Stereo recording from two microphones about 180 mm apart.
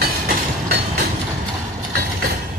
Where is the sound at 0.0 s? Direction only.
55° right (ahead or behind).